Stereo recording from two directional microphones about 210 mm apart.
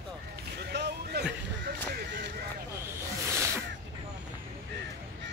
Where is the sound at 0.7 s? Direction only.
50° right (ahead or behind).